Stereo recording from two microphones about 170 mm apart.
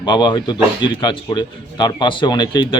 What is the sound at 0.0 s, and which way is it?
A man's voice, 25° left (ahead or behind).